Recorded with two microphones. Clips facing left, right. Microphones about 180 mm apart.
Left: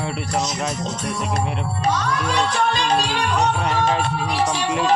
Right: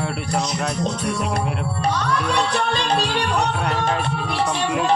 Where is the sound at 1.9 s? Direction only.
60° right (ahead or behind).